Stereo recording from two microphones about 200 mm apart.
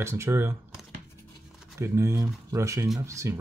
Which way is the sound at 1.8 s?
15° right (ahead or behind).